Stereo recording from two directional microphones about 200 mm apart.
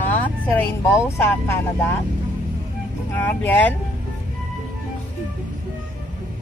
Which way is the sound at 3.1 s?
10° left (ahead or behind).